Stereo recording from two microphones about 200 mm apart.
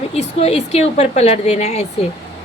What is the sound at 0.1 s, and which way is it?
A woman's voice, 30° left (ahead or behind).